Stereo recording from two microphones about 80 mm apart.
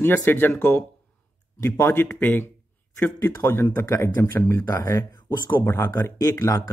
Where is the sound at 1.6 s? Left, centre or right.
Left.